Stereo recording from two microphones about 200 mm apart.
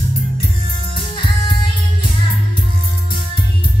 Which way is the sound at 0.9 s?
25° left (ahead or behind).